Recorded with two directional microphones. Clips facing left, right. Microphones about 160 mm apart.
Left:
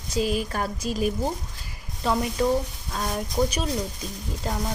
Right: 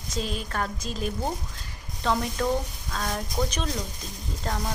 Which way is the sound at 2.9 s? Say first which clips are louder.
Left 2 dB; 15° left (ahead or behind).